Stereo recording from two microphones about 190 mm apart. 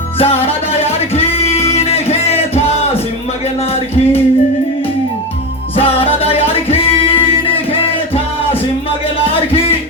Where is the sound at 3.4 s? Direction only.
30° left (ahead or behind).